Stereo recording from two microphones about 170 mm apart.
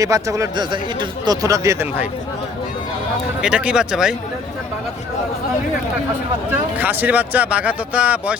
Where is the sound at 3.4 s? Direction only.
5° right (ahead or behind).